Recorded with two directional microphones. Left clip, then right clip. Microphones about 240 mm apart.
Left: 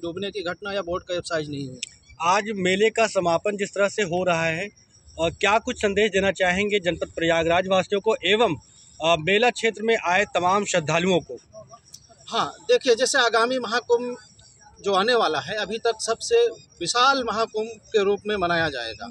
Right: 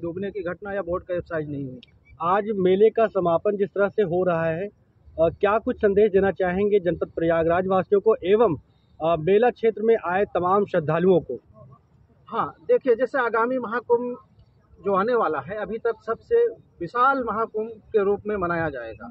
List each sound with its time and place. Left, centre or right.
0.0 s speech: centre
2.1 s speech: right
12.3 s speech: centre